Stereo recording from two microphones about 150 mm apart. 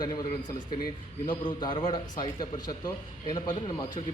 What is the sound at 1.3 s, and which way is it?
A man's voice, 30° left (ahead or behind).